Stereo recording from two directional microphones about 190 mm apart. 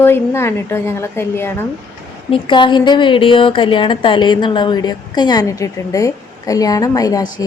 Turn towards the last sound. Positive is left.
turn(degrees=20)  # may be behind; listen again after turning